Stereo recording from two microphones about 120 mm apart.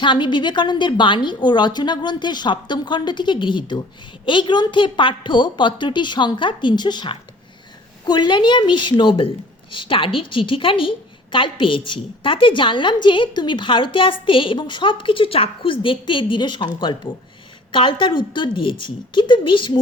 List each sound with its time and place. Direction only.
0.0 s a woman's voice: 40° left (ahead or behind)